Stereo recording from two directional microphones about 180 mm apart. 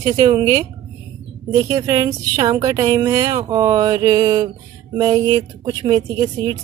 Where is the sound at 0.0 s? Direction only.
20° right (ahead or behind).